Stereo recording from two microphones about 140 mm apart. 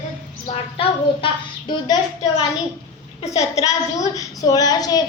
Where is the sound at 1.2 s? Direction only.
30° left (ahead or behind).